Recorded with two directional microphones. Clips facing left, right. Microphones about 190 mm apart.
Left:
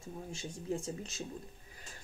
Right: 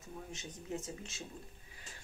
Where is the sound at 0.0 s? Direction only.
30° left (ahead or behind).